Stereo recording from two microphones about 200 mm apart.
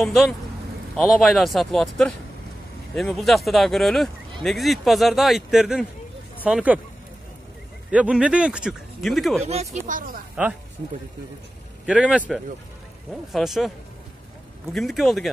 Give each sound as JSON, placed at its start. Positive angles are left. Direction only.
{"t": 0.0, "sound": "speech", "side_deg": 0}
{"t": 7.9, "sound": "speech", "side_deg": -5}
{"t": 9.4, "sound": "speech", "side_deg": -30}
{"t": 9.8, "sound": "speech", "side_deg": -45}
{"t": 11.8, "sound": "speech", "side_deg": -5}
{"t": 14.7, "sound": "speech", "side_deg": 0}